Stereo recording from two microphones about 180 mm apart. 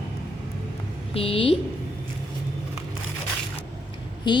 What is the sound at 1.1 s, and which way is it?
Speech, 30° left (ahead or behind).